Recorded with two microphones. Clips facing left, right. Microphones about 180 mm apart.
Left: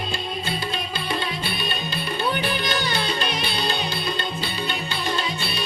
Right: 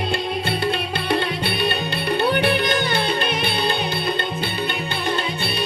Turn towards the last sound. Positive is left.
turn(degrees=-55)  # may be behind; listen again after turning